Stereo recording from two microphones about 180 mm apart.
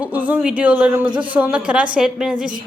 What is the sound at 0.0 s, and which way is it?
A woman's voice, 10° right (ahead or behind).